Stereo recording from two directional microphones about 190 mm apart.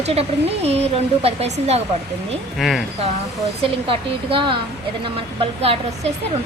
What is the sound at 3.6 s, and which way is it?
Speech, 30° right (ahead or behind).